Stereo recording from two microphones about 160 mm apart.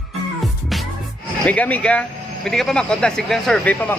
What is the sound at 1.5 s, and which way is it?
Speech, 10° left (ahead or behind).